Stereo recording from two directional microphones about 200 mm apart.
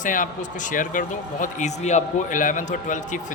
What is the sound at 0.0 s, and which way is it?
Speech, 40° left (ahead or behind).